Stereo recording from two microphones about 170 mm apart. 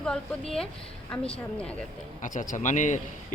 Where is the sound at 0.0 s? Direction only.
5° left (ahead or behind).